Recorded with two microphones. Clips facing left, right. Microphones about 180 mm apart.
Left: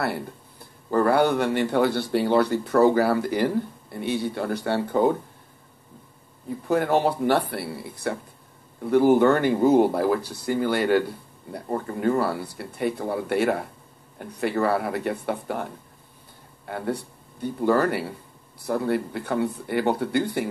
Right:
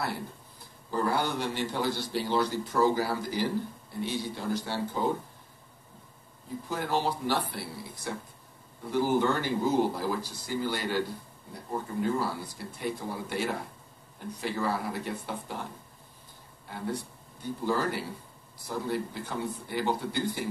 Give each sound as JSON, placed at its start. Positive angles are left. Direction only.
{"t": 0.0, "sound": "speech", "side_deg": 60}
{"t": 6.7, "sound": "speech", "side_deg": 60}